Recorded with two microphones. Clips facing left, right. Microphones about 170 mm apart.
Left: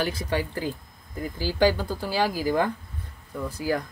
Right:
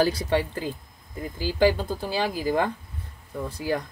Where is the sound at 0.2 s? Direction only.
25° right (ahead or behind).